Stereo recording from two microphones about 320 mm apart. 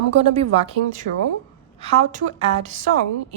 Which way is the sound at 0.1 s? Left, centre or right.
Centre.